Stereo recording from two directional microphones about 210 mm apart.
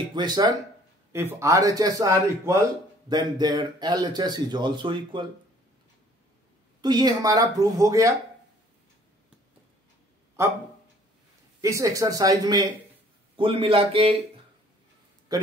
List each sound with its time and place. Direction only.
0.1 s a man's voice: 20° right (ahead or behind)
6.8 s a man's voice: 20° right (ahead or behind)
10.4 s a man's voice: 15° right (ahead or behind)
11.6 s a man's voice: 15° right (ahead or behind)
15.3 s speech: 20° right (ahead or behind)